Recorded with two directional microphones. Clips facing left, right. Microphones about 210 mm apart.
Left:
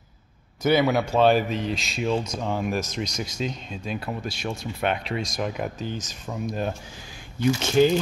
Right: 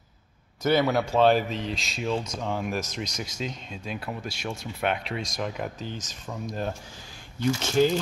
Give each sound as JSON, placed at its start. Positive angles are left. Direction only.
{"t": 0.6, "sound": "speech", "side_deg": 5}
{"t": 5.4, "sound": "speech", "side_deg": 10}